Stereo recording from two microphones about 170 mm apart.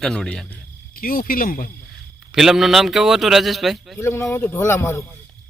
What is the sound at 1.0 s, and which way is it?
Speech, 55° left (ahead or behind).